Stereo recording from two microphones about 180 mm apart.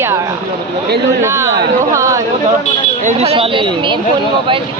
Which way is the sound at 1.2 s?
15° right (ahead or behind).